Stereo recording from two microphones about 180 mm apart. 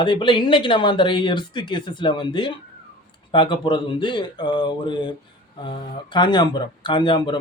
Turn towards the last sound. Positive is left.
turn(degrees=25)  # may be behind; listen again after turning